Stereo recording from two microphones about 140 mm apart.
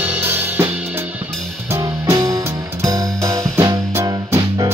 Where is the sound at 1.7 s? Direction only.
20° right (ahead or behind).